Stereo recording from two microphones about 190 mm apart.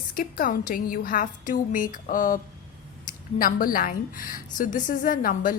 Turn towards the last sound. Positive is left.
turn(degrees=45)  # may be behind; listen again after turning